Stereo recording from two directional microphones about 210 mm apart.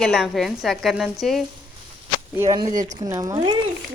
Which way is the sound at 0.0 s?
Centre (ahead or behind).